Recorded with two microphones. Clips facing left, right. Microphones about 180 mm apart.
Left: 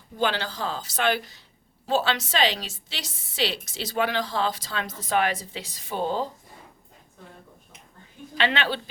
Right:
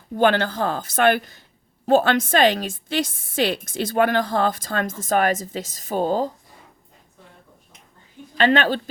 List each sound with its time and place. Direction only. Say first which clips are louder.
0.2 s a woman's voice: right 8 dB; 55° right (ahead or behind)
8.4 s a woman's voice: right 7 dB; 45° right (ahead or behind)